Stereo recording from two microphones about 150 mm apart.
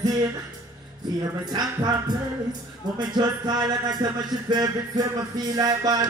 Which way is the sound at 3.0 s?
25° right (ahead or behind).